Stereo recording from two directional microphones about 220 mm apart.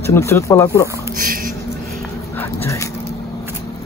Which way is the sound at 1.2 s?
40° right (ahead or behind).